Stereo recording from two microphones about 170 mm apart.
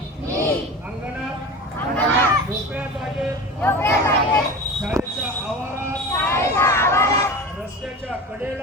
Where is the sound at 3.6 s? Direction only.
10° left (ahead or behind).